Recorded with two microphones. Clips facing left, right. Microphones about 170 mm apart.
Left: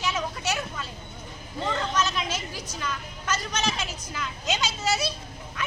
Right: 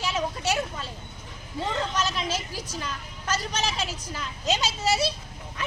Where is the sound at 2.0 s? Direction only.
35° right (ahead or behind).